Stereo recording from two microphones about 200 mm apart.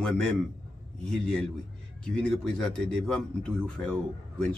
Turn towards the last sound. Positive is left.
turn(degrees=5)  # may be behind; listen again after turning